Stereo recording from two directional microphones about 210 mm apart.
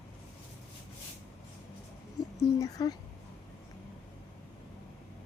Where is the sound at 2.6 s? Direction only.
15° left (ahead or behind).